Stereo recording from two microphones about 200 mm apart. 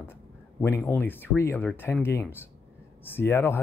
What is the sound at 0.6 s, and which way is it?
Speech, 10° left (ahead or behind).